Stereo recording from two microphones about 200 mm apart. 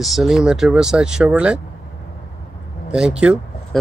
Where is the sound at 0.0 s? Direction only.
Centre (ahead or behind).